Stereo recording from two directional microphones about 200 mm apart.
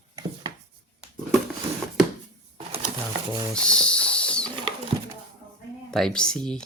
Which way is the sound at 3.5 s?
5° left (ahead or behind).